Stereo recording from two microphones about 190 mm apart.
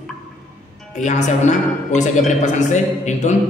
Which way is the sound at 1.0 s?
40° left (ahead or behind).